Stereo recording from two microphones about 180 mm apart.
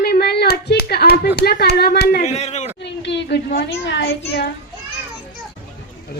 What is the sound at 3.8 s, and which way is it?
Speech, 70° left (ahead or behind).